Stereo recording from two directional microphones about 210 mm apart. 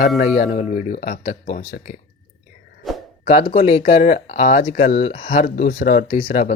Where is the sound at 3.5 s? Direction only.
30° left (ahead or behind).